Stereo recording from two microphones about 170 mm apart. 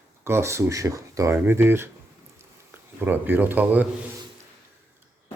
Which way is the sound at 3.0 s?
10° right (ahead or behind).